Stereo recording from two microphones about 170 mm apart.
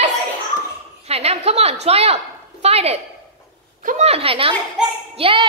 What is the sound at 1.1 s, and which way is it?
A woman's voice, 35° right (ahead or behind).